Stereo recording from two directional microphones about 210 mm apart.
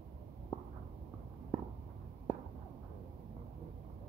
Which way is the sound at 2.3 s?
10° left (ahead or behind).